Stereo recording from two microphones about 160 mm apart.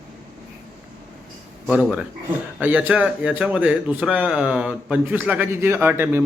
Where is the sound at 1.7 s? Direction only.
5° right (ahead or behind).